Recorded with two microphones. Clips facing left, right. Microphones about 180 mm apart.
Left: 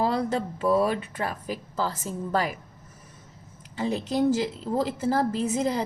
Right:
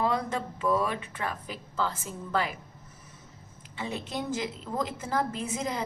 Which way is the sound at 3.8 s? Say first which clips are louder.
Left 9 dB; 40° left (ahead or behind).